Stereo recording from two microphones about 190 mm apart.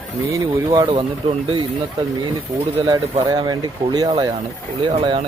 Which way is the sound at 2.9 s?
25° right (ahead or behind).